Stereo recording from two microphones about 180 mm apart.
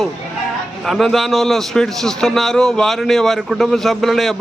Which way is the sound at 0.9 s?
Centre (ahead or behind).